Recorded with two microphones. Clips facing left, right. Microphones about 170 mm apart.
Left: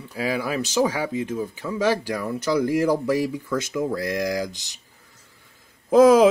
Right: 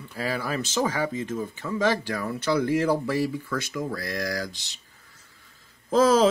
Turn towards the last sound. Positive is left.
turn(degrees=15)  # may be behind; listen again after turning